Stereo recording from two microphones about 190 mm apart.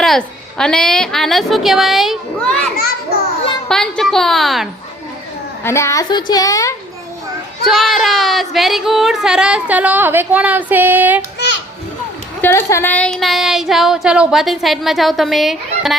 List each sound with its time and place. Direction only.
0.0 s speech: centre (ahead or behind)
3.7 s speech: 5° left (ahead or behind)
5.6 s a woman's voice: 15° left (ahead or behind)
7.7 s speech: centre (ahead or behind)
12.4 s speech: 10° left (ahead or behind)